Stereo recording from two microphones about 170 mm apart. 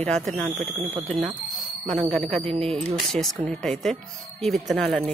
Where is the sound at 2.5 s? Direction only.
35° right (ahead or behind).